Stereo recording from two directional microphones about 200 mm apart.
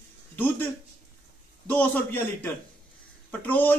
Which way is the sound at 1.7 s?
10° left (ahead or behind).